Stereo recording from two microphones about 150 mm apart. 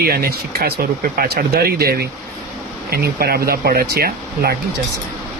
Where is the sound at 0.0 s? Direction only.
85° right.